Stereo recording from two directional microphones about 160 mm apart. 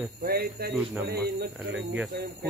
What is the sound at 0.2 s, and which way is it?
Speech, 75° right (ahead or behind).